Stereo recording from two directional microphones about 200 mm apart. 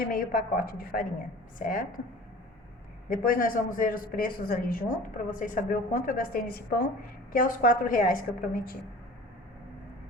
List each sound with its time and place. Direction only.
0.0 s speech: 45° left (ahead or behind)
3.1 s speech: 45° left (ahead or behind)